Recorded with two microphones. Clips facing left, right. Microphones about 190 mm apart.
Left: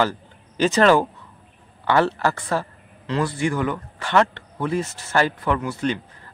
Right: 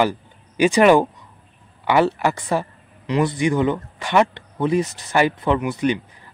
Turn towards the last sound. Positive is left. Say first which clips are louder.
# right 3 dB
turn(degrees=-15)  # may be behind; listen again after turning